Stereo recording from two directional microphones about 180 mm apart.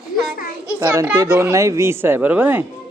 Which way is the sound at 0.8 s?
10° right (ahead or behind).